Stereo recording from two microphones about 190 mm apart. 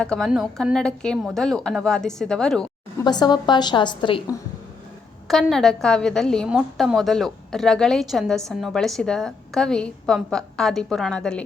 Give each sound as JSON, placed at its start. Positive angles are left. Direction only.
{"t": 0.0, "sound": "a woman's voice", "side_deg": 5}
{"t": 3.0, "sound": "a woman's voice", "side_deg": 20}
{"t": 5.3, "sound": "a woman's voice", "side_deg": 0}